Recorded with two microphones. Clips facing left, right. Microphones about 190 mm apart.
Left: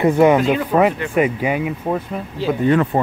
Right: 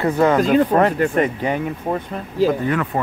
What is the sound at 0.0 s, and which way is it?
Speech, 15° left (ahead or behind).